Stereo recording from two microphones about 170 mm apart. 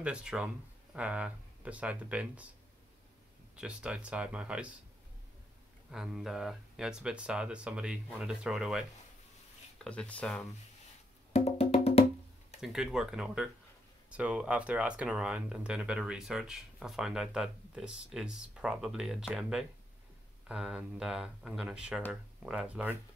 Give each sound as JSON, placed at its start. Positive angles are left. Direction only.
{"t": 0.0, "sound": "speech", "side_deg": -5}
{"t": 3.5, "sound": "speech", "side_deg": -5}
{"t": 5.9, "sound": "speech", "side_deg": 0}
{"t": 9.8, "sound": "speech", "side_deg": 5}
{"t": 11.3, "sound": "music", "side_deg": 35}
{"t": 12.6, "sound": "speech", "side_deg": -5}